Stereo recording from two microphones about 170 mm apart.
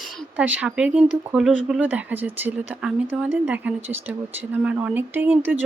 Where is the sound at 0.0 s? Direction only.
5° right (ahead or behind).